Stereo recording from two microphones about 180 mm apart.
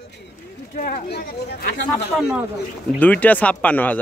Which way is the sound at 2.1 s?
5° right (ahead or behind).